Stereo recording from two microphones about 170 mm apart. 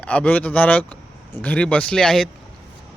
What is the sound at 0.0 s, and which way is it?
Speech, 5° left (ahead or behind).